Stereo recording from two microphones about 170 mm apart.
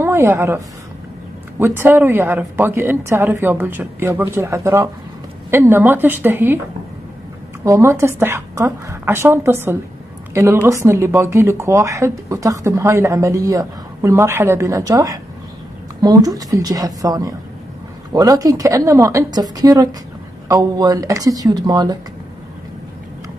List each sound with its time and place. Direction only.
0.0 s a woman's voice: 15° right (ahead or behind)
1.6 s speech: 15° right (ahead or behind)
7.6 s a woman's voice: 20° right (ahead or behind)